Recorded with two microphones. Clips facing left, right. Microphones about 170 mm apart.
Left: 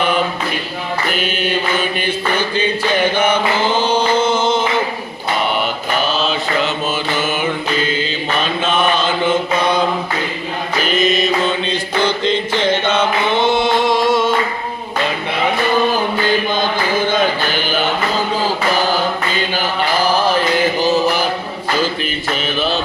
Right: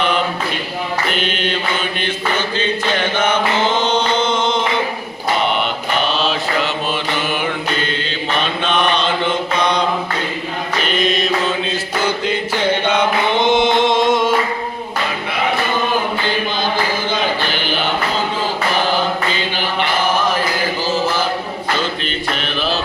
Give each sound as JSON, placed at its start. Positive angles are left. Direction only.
{"t": 1.1, "sound": "mantra", "side_deg": 5}
{"t": 3.2, "sound": "chant", "side_deg": 10}
{"t": 6.1, "sound": "mantra", "side_deg": 0}
{"t": 20.8, "sound": "music", "side_deg": 15}
{"t": 22.0, "sound": "mantra", "side_deg": 0}